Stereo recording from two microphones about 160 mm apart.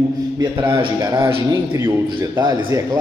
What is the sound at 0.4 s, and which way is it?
Speech, 30° right (ahead or behind).